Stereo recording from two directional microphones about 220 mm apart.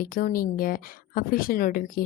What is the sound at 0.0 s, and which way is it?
Speech, 40° left (ahead or behind).